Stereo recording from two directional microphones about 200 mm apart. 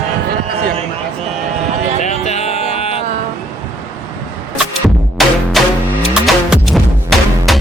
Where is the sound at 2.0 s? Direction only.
35° left (ahead or behind).